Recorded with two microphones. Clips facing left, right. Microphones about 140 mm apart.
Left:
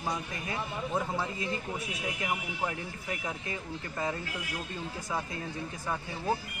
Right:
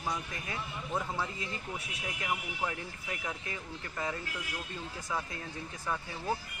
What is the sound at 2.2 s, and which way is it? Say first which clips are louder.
Speech: even; 15° left (ahead or behind).